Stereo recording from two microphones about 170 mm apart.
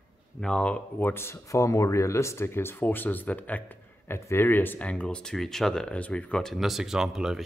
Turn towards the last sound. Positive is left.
turn(degrees=0)  # may be behind; listen again after turning